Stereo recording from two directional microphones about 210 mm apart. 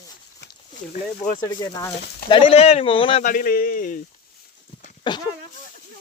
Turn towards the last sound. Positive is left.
turn(degrees=20)  # may be behind; listen again after turning